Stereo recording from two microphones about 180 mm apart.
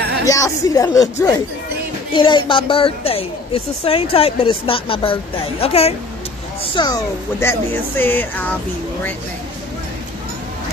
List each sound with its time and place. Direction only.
0.2 s a woman's voice: 20° left (ahead or behind)
7.3 s speech: 10° left (ahead or behind)